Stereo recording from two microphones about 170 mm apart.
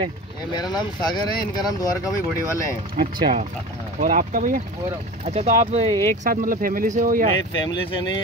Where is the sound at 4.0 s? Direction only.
50° right (ahead or behind).